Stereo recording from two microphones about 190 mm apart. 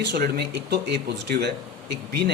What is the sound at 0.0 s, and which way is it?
Speech, 60° right (ahead or behind).